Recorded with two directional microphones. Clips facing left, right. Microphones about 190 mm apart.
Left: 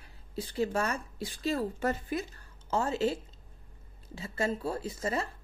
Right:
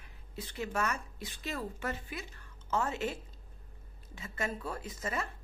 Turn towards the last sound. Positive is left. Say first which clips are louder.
# left 5 dB
turn(degrees=30)  # may be behind; listen again after turning